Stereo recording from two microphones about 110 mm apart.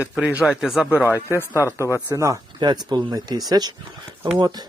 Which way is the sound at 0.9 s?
20° left (ahead or behind).